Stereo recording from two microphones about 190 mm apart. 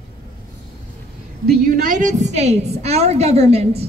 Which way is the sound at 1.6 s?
45° right (ahead or behind).